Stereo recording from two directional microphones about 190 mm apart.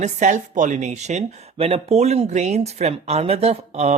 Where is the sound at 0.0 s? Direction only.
40° right (ahead or behind).